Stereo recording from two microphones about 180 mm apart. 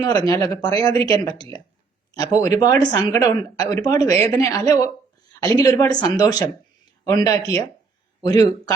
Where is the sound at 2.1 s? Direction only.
20° left (ahead or behind).